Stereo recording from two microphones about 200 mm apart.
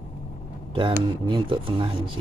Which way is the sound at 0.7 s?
25° right (ahead or behind).